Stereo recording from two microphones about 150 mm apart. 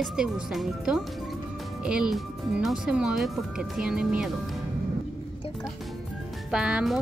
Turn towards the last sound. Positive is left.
turn(degrees=-5)  # may be behind; listen again after turning